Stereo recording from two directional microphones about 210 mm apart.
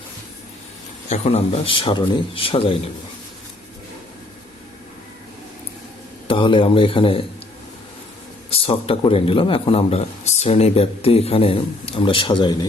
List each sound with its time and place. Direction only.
1.0 s a man's voice: 30° left (ahead or behind)
6.2 s a man's voice: 25° left (ahead or behind)
8.4 s a man's voice: 25° left (ahead or behind)